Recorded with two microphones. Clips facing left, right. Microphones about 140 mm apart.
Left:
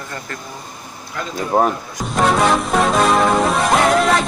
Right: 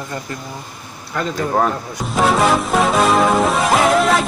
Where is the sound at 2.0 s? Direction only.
Centre (ahead or behind).